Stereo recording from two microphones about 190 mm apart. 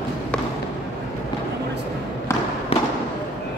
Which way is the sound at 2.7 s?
30° left (ahead or behind).